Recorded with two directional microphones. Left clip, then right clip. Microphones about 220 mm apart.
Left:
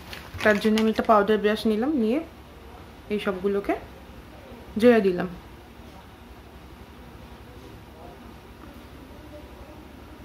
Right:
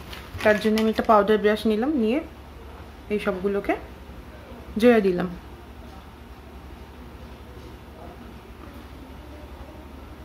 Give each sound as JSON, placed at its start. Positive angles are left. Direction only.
{"t": 0.4, "sound": "speech", "side_deg": 15}
{"t": 1.0, "sound": "speech", "side_deg": 0}
{"t": 4.7, "sound": "speech", "side_deg": 5}